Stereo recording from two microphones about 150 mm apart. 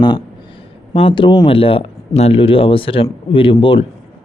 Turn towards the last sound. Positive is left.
turn(degrees=35)  # may be behind; listen again after turning